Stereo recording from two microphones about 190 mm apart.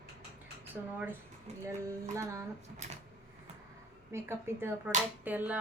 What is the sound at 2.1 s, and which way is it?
Speech, 15° right (ahead or behind).